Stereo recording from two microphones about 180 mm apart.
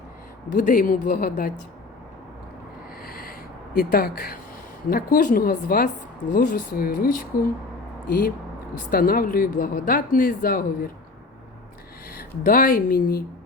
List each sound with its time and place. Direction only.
0.5 s a woman's voice: 50° left (ahead or behind)
3.0 s a sound: 55° left (ahead or behind)
3.8 s a woman's voice: 55° left (ahead or behind)
12.1 s a woman's voice: 50° left (ahead or behind)